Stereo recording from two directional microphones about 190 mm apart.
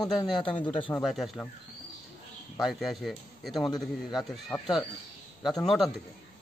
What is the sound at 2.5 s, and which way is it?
Speech, centre (ahead or behind).